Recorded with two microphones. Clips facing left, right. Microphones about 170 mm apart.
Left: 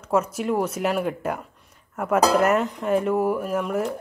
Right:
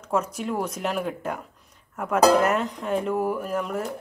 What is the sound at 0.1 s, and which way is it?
Speech, 5° left (ahead or behind).